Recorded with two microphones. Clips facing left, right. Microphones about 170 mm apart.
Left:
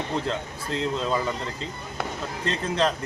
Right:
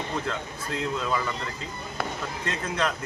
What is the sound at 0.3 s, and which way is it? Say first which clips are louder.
Speech: left 2 dB; 25° left (ahead or behind).